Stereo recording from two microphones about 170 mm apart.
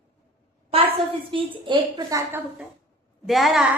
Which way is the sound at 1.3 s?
30° right (ahead or behind).